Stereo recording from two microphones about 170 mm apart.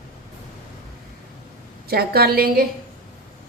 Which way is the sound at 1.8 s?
65° right (ahead or behind).